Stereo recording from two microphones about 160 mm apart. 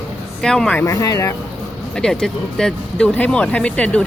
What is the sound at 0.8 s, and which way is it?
Speech, 20° left (ahead or behind).